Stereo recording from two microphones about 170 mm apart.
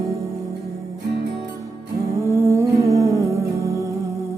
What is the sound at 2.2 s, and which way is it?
Humming, 15° right (ahead or behind).